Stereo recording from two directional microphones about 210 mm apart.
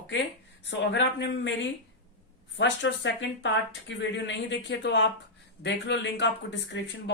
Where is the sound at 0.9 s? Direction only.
55° left (ahead or behind).